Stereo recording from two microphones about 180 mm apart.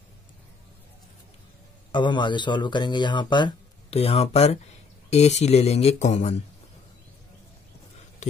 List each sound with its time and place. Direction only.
1.9 s speech: 25° left (ahead or behind)